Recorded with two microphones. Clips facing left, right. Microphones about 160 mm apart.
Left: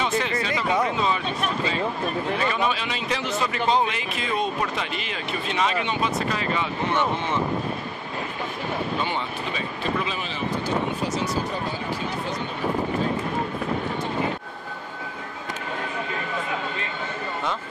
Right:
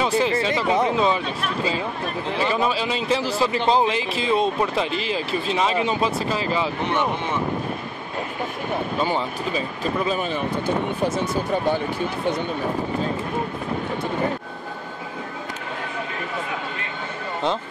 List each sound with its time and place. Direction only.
0.0 s speech: 30° right (ahead or behind)
9.0 s speech: 40° right (ahead or behind)